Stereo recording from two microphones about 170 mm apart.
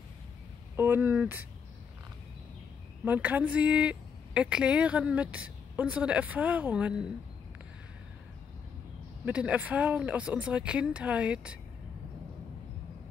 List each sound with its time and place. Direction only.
0.7 s speech: 10° right (ahead or behind)
3.1 s speech: 10° right (ahead or behind)
9.2 s speech: 10° right (ahead or behind)